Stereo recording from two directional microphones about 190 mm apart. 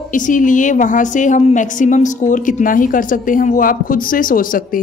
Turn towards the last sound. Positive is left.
turn(degrees=45)  # may be behind; listen again after turning